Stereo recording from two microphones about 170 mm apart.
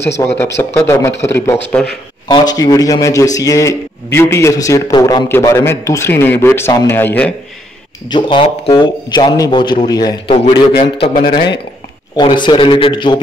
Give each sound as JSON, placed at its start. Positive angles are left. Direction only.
{"t": 0.0, "sound": "a man's voice", "side_deg": 15}
{"t": 8.1, "sound": "a man's voice", "side_deg": 30}
{"t": 11.1, "sound": "speech", "side_deg": 65}
{"t": 12.2, "sound": "a man's voice", "side_deg": 25}